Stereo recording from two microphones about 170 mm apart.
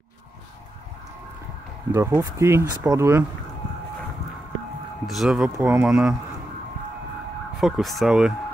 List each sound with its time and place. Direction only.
1.9 s speech: 15° right (ahead or behind)
5.0 s speech: centre (ahead or behind)
7.6 s speech: centre (ahead or behind)